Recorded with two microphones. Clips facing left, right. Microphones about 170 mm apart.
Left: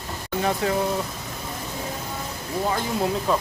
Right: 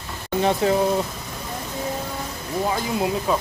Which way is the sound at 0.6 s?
20° right (ahead or behind).